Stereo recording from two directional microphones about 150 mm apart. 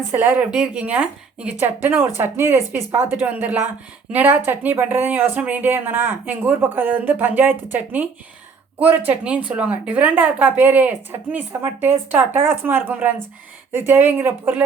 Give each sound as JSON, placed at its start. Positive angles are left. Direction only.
{"t": 0.1, "sound": "speech", "side_deg": -10}